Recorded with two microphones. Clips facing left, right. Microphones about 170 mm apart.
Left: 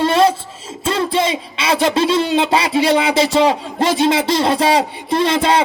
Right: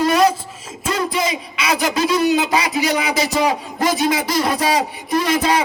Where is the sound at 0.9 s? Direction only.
30° left (ahead or behind).